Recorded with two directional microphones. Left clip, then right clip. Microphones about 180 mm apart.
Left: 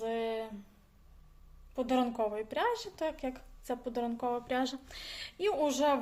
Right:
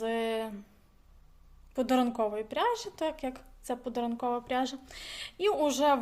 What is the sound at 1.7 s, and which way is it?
A woman's voice, 25° right (ahead or behind).